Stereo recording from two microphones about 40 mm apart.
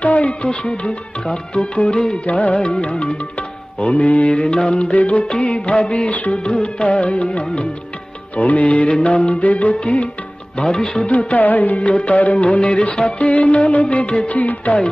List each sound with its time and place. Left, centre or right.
0.0 s music: left
2.2 s music: left
4.4 s music: left
6.1 s music: left
6.4 s music: left
10.6 s music: centre
11.1 s music: left
14.3 s music: left